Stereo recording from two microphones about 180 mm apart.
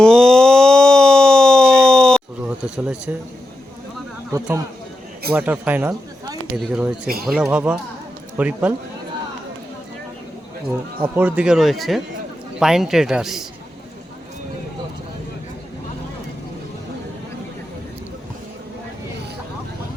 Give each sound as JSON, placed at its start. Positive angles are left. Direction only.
{"t": 0.0, "sound": "a sound", "side_deg": 5}
{"t": 2.6, "sound": "speech", "side_deg": -5}
{"t": 4.3, "sound": "speech", "side_deg": -15}
{"t": 5.9, "sound": "a sound", "side_deg": -20}
{"t": 6.7, "sound": "speech", "side_deg": -5}
{"t": 10.7, "sound": "speech", "side_deg": -10}